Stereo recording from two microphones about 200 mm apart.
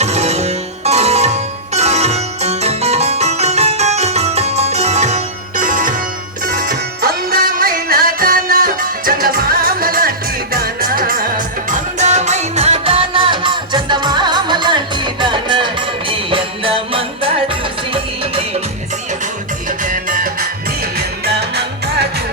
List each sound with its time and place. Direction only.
0.0 s music: 35° right (ahead or behind)
19.8 s music: 40° right (ahead or behind)
21.2 s music: 55° right (ahead or behind)